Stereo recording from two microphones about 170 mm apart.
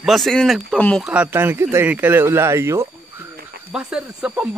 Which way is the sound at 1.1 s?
10° right (ahead or behind).